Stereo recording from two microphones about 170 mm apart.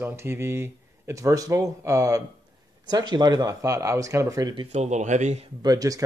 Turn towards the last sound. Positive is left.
turn(degrees=-20)  # may be behind; listen again after turning